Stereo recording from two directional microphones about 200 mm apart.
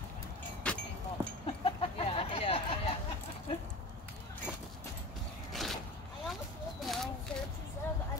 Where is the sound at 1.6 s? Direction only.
30° left (ahead or behind).